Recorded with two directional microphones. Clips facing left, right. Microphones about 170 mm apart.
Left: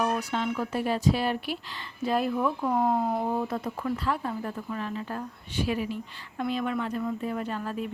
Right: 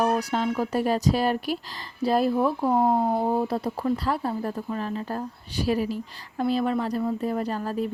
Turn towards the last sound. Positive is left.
turn(degrees=-35)  # may be behind; listen again after turning